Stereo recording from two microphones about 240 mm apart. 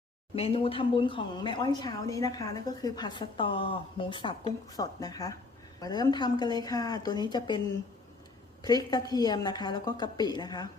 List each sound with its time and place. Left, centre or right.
0.3 s a woman's voice: left
8.6 s a woman's voice: centre